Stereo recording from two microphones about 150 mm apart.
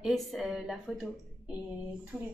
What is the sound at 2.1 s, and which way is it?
Speech, 5° left (ahead or behind).